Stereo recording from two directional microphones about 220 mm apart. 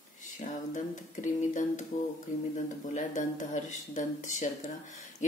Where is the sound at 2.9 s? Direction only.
35° left (ahead or behind).